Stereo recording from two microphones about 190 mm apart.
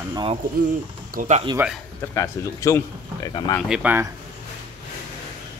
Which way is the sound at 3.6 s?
5° right (ahead or behind).